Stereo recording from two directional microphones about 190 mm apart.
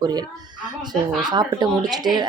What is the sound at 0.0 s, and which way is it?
Speech, 20° right (ahead or behind).